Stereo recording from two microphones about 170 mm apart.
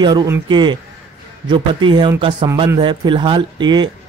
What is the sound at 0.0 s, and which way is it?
Speech, 25° right (ahead or behind).